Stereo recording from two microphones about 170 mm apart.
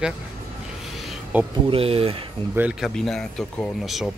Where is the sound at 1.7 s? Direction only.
35° right (ahead or behind).